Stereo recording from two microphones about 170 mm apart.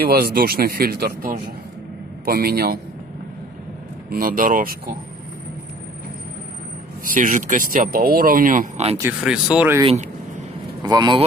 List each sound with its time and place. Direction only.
0.0 s speech: 65° right (ahead or behind)
4.1 s speech: 55° right (ahead or behind)
7.1 s speech: 50° right (ahead or behind)
9.2 s speech: 5° right (ahead or behind)
9.8 s vehicle: 40° right (ahead or behind)
10.8 s speech: 25° right (ahead or behind)